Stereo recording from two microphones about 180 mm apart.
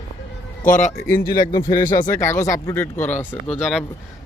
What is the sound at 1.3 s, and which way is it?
Speech, 20° left (ahead or behind).